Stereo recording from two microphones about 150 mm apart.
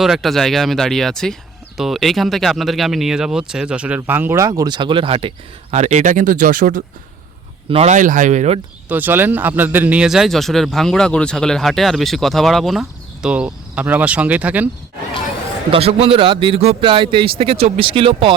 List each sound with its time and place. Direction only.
0.0 s speech: centre (ahead or behind); by 5.3 s 35° right (ahead or behind)
5.7 s speech: 50° right (ahead or behind)
7.7 s speech: 45° right (ahead or behind)
7.9 s speech: 60° right (ahead or behind)
8.9 s speech: 10° right (ahead or behind)
15.7 s a man's voice: 40° right (ahead or behind)